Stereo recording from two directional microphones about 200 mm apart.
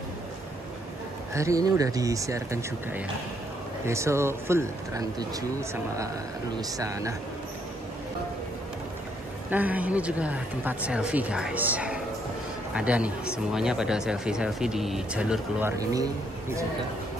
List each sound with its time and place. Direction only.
1.3 s speech: 15° right (ahead or behind)
9.5 s speech: 10° right (ahead or behind)
15.8 s speech: 15° right (ahead or behind)